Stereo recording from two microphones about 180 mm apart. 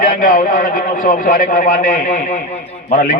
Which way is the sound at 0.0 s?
50° left (ahead or behind).